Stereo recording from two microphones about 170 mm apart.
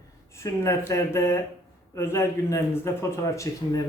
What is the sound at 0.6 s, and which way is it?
A man's voice, 15° left (ahead or behind).